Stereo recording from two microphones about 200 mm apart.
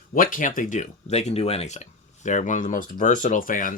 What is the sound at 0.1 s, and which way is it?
Speech, 45° left (ahead or behind).